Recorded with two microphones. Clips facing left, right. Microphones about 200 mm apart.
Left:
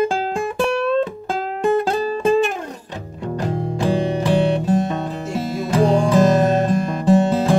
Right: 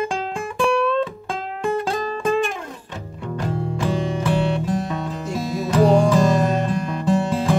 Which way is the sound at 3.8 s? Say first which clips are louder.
Left 4 dB; 35° left (ahead or behind).